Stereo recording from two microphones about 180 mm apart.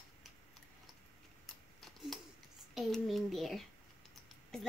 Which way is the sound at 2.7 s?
Centre (ahead or behind).